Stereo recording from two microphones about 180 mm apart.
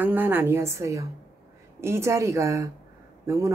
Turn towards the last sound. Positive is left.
turn(degrees=-20)  # may be behind; listen again after turning